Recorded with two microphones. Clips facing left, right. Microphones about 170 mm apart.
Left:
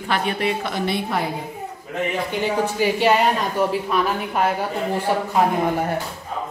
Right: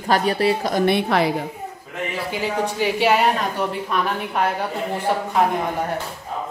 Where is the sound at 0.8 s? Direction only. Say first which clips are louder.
Right 6 dB; 75° right (ahead or behind).